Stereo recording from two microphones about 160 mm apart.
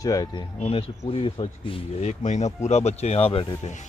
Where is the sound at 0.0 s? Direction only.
20° left (ahead or behind).